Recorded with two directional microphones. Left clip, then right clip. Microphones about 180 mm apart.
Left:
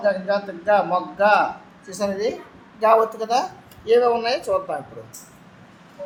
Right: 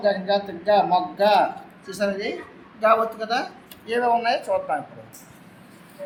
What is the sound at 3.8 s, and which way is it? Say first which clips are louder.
Speech: left 3 dB; 55° left (ahead or behind).